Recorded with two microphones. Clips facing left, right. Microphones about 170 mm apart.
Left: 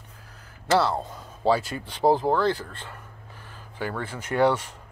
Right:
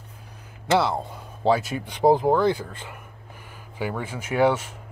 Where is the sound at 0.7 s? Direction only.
15° right (ahead or behind).